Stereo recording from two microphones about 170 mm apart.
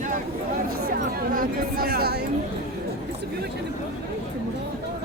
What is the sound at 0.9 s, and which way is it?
Music, 55° right (ahead or behind).